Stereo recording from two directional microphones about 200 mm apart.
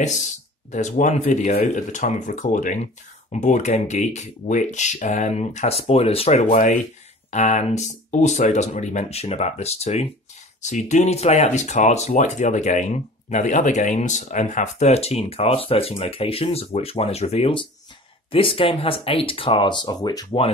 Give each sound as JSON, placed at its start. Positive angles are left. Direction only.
{"t": 0.7, "sound": "speech", "side_deg": 35}